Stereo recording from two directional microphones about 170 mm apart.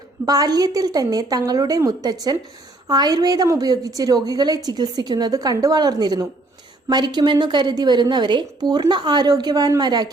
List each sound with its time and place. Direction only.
0.3 s a woman's voice: 20° right (ahead or behind)